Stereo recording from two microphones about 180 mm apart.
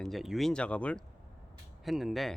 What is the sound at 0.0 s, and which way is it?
Speech, centre (ahead or behind).